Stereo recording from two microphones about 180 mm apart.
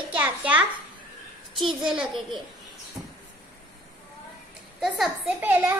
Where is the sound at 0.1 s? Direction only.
10° right (ahead or behind).